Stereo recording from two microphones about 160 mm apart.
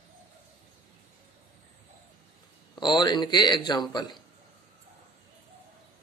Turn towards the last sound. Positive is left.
turn(degrees=25)  # may be behind; listen again after turning